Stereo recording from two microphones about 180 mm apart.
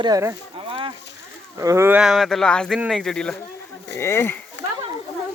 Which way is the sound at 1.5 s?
15° right (ahead or behind).